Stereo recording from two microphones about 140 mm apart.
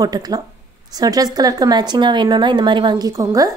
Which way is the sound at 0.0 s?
25° right (ahead or behind).